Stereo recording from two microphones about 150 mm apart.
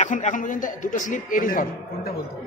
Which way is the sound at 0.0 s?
55° left (ahead or behind).